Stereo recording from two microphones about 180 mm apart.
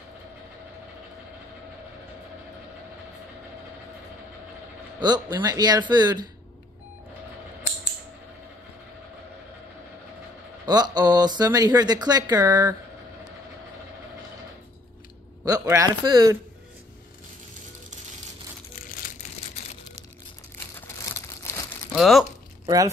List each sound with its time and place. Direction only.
5.0 s speech: 20° right (ahead or behind)
10.6 s speech: 20° right (ahead or behind)
15.4 s speech: 20° right (ahead or behind)
18.8 s crushing: 50° left (ahead or behind)
20.5 s crumpling: 15° left (ahead or behind)
21.9 s speech: centre (ahead or behind)